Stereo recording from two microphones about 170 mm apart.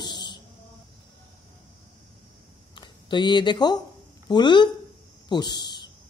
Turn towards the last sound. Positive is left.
turn(degrees=25)  # may be behind; listen again after turning